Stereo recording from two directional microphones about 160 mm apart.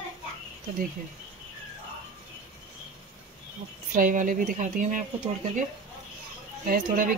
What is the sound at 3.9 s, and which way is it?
A woman's voice, 55° right (ahead or behind).